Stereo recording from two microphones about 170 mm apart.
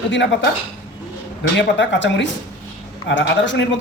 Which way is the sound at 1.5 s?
90° left.